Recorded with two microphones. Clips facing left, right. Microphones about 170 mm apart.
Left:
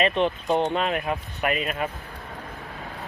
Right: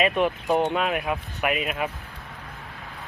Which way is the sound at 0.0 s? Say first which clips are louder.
Even; 5° right (ahead or behind).